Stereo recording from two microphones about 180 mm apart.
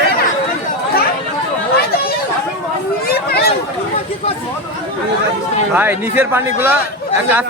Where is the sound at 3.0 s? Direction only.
60° left (ahead or behind).